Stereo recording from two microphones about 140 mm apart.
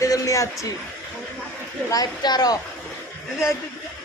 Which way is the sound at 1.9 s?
30° left (ahead or behind).